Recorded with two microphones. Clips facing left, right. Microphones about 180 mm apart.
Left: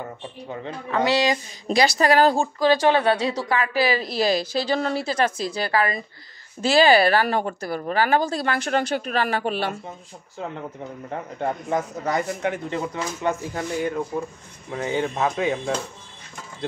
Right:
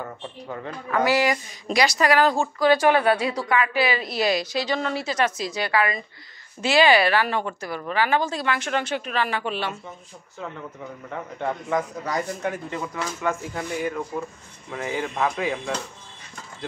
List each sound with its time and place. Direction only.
0.5 s speech: 25° left (ahead or behind); by 9.8 s 45° left (ahead or behind)
11.1 s speech: 35° left (ahead or behind)